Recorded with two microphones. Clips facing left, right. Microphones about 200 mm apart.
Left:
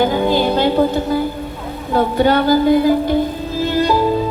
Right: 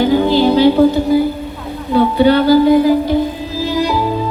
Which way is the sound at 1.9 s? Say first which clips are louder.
Right 4 dB; 50° left (ahead or behind).